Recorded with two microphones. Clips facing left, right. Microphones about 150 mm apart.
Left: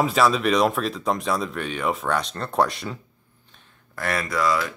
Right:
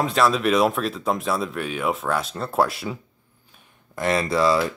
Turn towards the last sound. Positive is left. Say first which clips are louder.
# right 4 dB
turn(degrees=-30)  # may be behind; listen again after turning